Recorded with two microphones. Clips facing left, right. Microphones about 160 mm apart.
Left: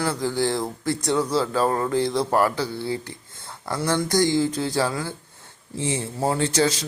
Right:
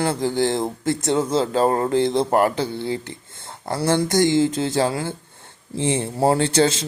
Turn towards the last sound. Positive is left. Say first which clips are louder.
# right 3 dB
turn(degrees=-25)  # may be behind; listen again after turning